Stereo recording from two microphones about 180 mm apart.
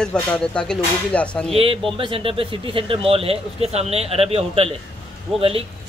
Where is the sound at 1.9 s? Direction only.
30° right (ahead or behind).